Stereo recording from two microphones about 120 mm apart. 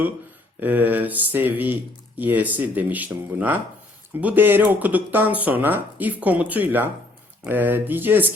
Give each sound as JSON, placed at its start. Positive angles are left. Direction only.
{"t": 0.6, "sound": "speech", "side_deg": -15}